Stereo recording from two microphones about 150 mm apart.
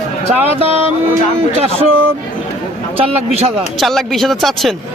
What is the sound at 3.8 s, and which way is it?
Speech, centre (ahead or behind).